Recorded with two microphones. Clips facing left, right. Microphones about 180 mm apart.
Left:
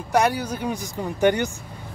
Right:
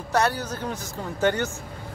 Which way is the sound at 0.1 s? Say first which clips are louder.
Left 3 dB; 10° left (ahead or behind).